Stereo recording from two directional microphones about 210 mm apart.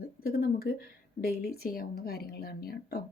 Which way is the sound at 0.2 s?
45° left (ahead or behind).